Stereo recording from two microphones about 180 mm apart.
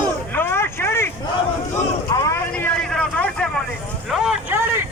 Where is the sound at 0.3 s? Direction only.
10° left (ahead or behind).